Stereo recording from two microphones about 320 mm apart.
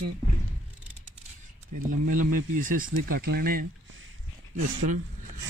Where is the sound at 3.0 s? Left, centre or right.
Right.